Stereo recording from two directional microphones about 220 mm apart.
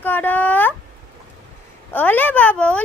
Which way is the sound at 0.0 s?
10° left (ahead or behind).